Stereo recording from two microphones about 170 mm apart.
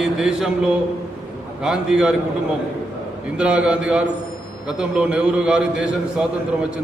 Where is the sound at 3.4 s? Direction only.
5° right (ahead or behind).